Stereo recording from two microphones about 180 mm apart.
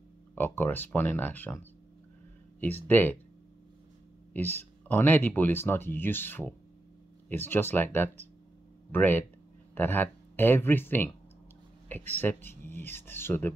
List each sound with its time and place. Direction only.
0.4 s speech: 10° left (ahead or behind)
4.3 s speech: 10° left (ahead or behind)